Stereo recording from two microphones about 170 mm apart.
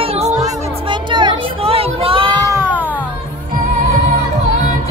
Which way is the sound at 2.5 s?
10° right (ahead or behind).